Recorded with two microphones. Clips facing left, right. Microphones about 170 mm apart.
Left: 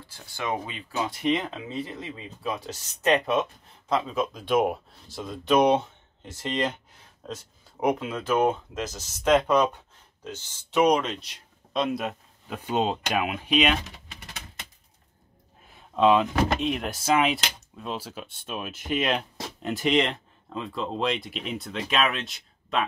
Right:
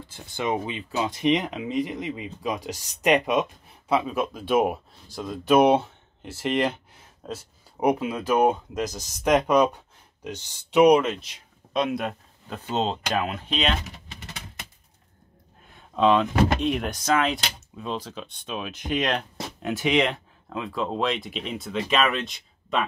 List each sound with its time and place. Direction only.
0.0 s speech: 20° right (ahead or behind); by 13.7 s 10° left (ahead or behind)
15.7 s speech: 5° left (ahead or behind)